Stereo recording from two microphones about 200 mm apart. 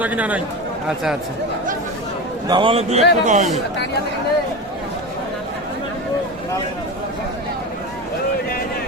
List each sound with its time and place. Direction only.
0.0 s a man's voice: 5° right (ahead or behind)
2.5 s a man's voice: 25° right (ahead or behind)